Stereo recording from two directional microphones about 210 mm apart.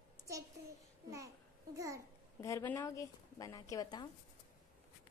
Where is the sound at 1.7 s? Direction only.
15° right (ahead or behind).